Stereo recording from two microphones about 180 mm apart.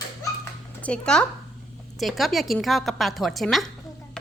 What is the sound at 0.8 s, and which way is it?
A woman's voice, 5° left (ahead or behind).